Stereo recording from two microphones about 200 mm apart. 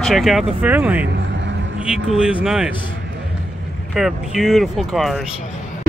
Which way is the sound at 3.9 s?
Centre (ahead or behind).